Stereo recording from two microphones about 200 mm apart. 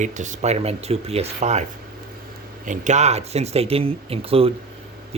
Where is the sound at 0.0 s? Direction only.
40° right (ahead or behind).